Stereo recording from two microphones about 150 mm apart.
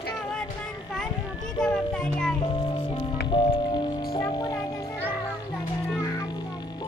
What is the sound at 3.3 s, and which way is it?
Music, 35° left (ahead or behind).